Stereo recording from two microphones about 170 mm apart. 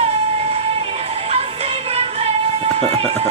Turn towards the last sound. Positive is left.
turn(degrees=-35)  # may be behind; listen again after turning